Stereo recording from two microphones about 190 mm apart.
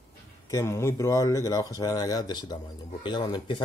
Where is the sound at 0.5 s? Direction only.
15° left (ahead or behind).